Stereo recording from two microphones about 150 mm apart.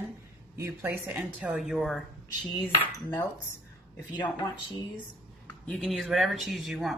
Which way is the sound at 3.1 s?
15° left (ahead or behind).